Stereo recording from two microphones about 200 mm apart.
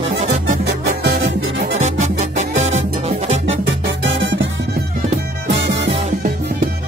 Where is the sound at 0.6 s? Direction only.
50° right (ahead or behind).